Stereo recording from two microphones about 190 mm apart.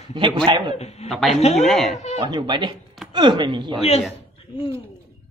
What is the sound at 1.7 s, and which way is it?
Speech, centre (ahead or behind).